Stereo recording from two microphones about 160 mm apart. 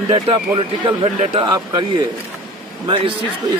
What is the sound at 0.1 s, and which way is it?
Speech, 30° right (ahead or behind).